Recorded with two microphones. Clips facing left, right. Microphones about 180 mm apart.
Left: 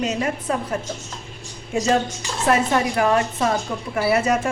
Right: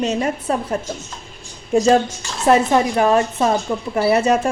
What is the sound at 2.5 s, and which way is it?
A woman's voice, 25° right (ahead or behind).